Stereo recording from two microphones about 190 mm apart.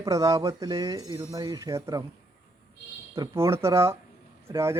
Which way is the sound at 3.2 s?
15° right (ahead or behind).